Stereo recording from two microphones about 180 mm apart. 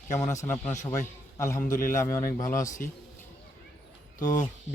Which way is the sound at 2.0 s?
15° left (ahead or behind).